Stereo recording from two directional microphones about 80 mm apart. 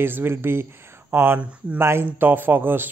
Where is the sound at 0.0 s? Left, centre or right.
Right.